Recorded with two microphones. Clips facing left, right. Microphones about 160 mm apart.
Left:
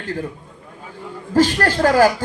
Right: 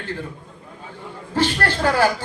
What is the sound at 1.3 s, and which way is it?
Speech, 40° left (ahead or behind).